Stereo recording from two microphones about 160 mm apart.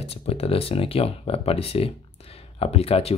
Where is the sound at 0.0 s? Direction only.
40° left (ahead or behind).